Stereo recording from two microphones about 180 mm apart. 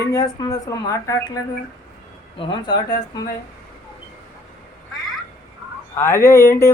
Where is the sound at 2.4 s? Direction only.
25° left (ahead or behind).